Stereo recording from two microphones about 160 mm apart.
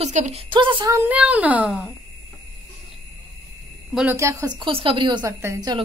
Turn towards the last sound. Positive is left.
turn(degrees=-20)  # may be behind; listen again after turning